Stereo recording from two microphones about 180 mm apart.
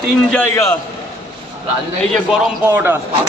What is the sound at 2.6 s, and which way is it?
Speech, 10° right (ahead or behind).